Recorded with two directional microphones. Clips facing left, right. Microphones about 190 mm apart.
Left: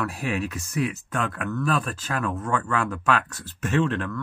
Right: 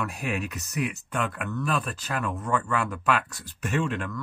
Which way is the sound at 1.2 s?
5° right (ahead or behind).